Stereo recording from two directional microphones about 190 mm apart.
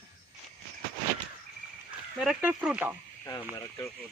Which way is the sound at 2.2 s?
5° right (ahead or behind).